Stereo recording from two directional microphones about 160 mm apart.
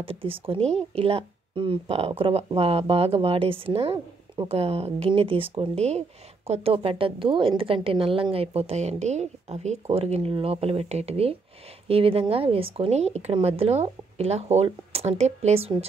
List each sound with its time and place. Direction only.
0.0 s speech: 35° right (ahead or behind)